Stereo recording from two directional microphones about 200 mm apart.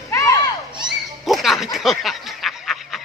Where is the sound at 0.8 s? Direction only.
Centre (ahead or behind).